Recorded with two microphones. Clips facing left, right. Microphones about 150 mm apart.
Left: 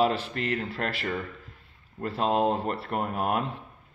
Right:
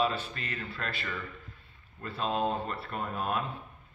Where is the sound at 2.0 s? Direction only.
80° left.